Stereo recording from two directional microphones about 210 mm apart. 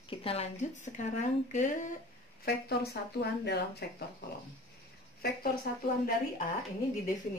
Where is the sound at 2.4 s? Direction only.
50° left (ahead or behind).